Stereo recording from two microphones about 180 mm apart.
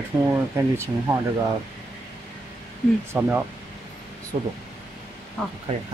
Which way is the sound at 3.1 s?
10° right (ahead or behind).